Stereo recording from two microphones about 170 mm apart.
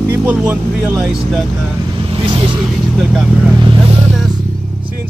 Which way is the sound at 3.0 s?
5° right (ahead or behind).